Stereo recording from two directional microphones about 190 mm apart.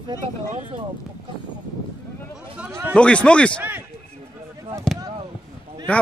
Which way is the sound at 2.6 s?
10° right (ahead or behind).